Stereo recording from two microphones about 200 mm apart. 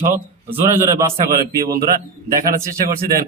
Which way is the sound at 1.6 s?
50° right (ahead or behind).